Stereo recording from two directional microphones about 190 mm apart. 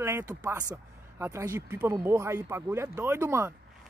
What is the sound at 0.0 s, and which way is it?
Speech, 15° right (ahead or behind).